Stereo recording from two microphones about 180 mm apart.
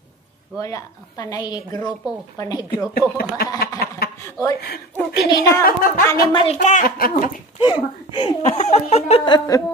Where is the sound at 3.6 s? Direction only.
55° left (ahead or behind).